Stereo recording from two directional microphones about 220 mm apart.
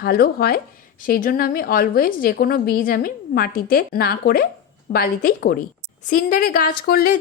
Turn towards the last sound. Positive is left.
turn(degrees=40)  # may be behind; listen again after turning